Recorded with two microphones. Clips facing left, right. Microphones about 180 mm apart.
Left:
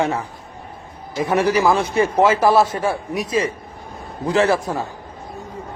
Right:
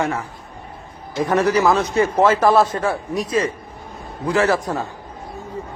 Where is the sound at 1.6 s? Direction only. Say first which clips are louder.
Even; 20° left (ahead or behind).